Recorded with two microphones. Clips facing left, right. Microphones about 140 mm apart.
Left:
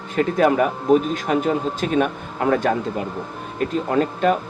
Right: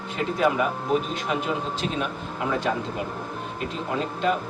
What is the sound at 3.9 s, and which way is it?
Speech, 50° left (ahead or behind).